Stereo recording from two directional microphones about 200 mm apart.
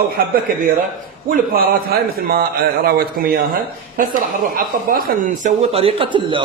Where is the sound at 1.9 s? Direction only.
50° right (ahead or behind).